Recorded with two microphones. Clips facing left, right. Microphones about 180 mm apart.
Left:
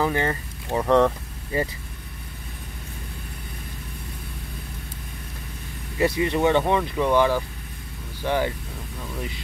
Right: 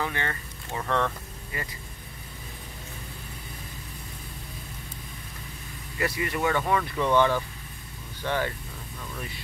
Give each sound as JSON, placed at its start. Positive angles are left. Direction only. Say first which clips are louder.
{"t": 0.0, "sound": "speech", "louder": "left 8 dB", "side_deg": 35}
{"t": 5.9, "sound": "speech", "louder": "left 7 dB", "side_deg": 25}